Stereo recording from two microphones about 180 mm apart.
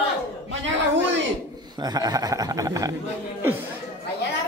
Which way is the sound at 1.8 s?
20° right (ahead or behind).